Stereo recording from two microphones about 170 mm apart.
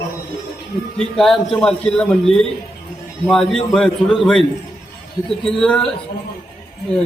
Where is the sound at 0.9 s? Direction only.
Centre (ahead or behind).